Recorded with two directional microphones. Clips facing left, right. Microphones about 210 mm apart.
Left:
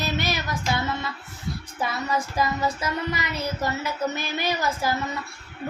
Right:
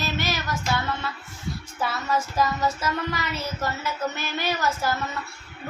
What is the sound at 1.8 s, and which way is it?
Speech, 15° left (ahead or behind).